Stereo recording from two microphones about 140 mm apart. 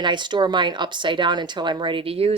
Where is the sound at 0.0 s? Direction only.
35° right (ahead or behind).